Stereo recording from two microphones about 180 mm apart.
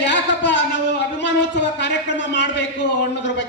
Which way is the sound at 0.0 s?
80° left.